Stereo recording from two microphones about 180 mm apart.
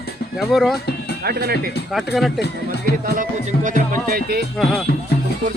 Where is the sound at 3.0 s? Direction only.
45° right (ahead or behind).